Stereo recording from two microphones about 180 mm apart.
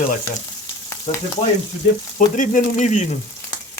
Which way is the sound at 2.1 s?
45° left (ahead or behind).